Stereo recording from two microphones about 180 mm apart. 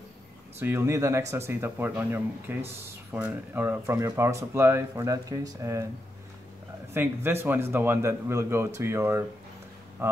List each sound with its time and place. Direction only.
0.6 s speech: 15° right (ahead or behind)
6.9 s speech: 15° right (ahead or behind)